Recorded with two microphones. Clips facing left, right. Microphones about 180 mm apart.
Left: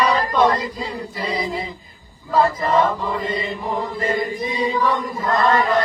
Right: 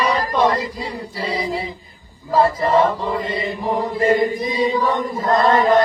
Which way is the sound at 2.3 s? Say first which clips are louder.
Right 2 dB; 25° right (ahead or behind).